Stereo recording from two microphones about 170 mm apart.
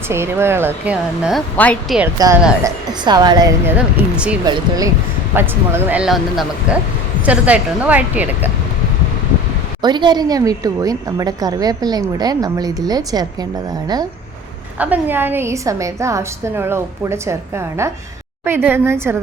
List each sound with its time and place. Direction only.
0.1 s a woman's voice: 15° right (ahead or behind)
1.5 s speech: 10° left (ahead or behind)
2.2 s a woman's voice: 20° right (ahead or behind)
3.7 s a woman's voice: 5° right (ahead or behind)
4.4 s a woman's voice: 25° right (ahead or behind)
5.3 s a woman's voice: 15° right (ahead or behind)
9.8 s a woman's voice: 25° right (ahead or behind)
14.8 s a woman's voice: 10° right (ahead or behind)
18.4 s a woman's voice: 15° right (ahead or behind)